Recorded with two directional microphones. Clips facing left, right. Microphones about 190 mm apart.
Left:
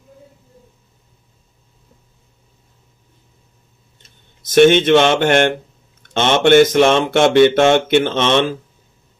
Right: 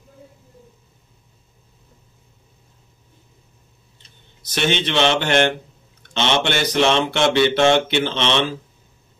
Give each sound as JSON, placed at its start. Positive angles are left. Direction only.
{"t": 4.0, "sound": "speech", "side_deg": 50}